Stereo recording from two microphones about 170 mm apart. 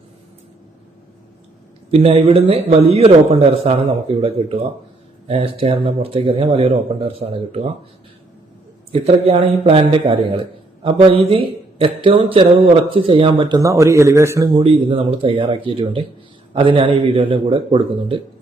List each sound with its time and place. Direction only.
1.9 s speech: 35° right (ahead or behind)
8.9 s a man's voice: 35° right (ahead or behind)